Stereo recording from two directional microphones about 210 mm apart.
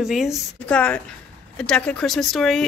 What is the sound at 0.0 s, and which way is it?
Speech, centre (ahead or behind).